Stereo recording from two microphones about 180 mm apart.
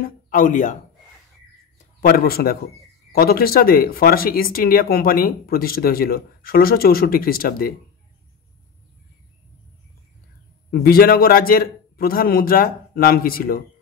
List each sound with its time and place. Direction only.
0.0 s a man's voice: 50° left (ahead or behind)
1.8 s a man's voice: 55° left (ahead or behind)
10.7 s speech: 55° left (ahead or behind)